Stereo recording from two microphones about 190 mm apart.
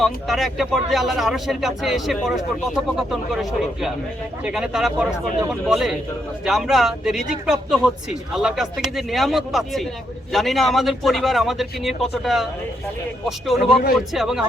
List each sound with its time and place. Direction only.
0.0 s speech: centre (ahead or behind)